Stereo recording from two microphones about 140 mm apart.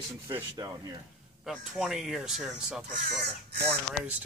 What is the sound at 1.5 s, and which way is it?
Speech, 5° right (ahead or behind).